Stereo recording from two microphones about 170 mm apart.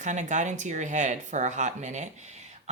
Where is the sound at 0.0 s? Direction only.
45° right (ahead or behind).